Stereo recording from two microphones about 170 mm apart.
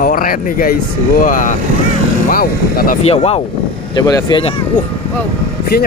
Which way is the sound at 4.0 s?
20° left (ahead or behind).